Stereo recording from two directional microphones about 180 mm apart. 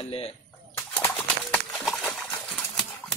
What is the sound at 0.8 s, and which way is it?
Pigeon, 10° left (ahead or behind).